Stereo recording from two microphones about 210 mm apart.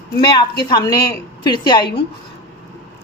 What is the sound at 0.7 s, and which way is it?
A woman's voice, 20° left (ahead or behind).